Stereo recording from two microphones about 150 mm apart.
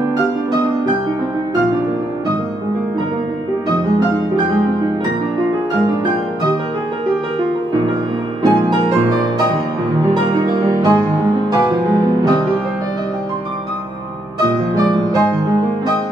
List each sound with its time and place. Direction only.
8.4 s music: 30° right (ahead or behind)
10.1 s music: 35° right (ahead or behind)